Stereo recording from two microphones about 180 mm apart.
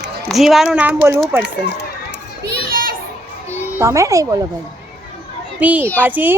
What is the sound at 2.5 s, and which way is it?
Children playing, 60° right (ahead or behind).